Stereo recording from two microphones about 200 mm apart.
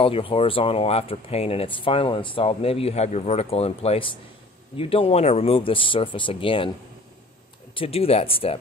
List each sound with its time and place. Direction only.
0.0 s speech: 25° left (ahead or behind)
7.7 s speech: 30° left (ahead or behind)